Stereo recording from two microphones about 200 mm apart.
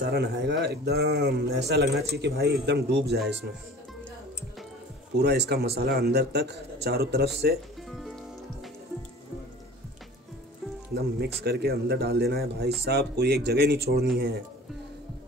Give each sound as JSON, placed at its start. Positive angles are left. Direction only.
{"t": 0.0, "sound": "speech", "side_deg": -55}
{"t": 5.1, "sound": "speech", "side_deg": -55}
{"t": 11.0, "sound": "speech", "side_deg": -55}